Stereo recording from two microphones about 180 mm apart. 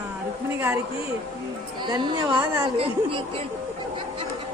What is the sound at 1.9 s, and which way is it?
A woman's voice, 25° right (ahead or behind).